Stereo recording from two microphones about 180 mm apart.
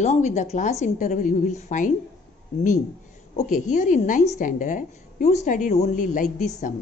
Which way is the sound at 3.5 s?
45° left (ahead or behind).